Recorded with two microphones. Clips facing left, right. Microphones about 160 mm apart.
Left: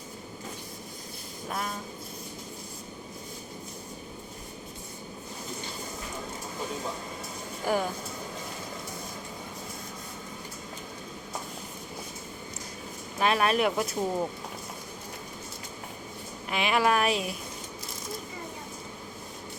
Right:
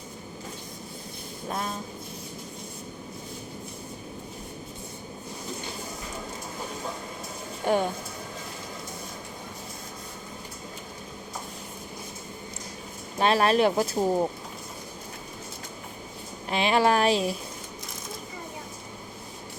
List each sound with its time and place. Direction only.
1.5 s a sound: 25° right (ahead or behind)
7.6 s speech: 25° right (ahead or behind)
13.1 s speech: 30° right (ahead or behind)
16.5 s speech: 30° right (ahead or behind)